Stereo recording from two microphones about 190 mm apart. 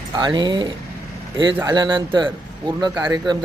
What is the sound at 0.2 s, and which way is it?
A man's voice, 25° right (ahead or behind).